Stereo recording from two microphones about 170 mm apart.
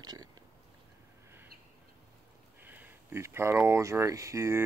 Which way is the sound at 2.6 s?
10° right (ahead or behind).